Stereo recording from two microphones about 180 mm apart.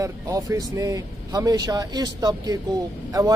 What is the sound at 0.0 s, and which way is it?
A man's voice, 20° right (ahead or behind).